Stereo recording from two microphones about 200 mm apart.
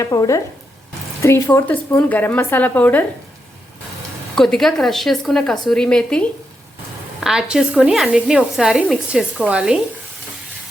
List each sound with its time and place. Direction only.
0.0 s speech: 15° left (ahead or behind)
4.4 s a woman's voice: centre (ahead or behind)